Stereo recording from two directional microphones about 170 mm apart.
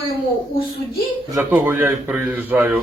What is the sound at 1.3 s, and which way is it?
A man's voice, 15° right (ahead or behind).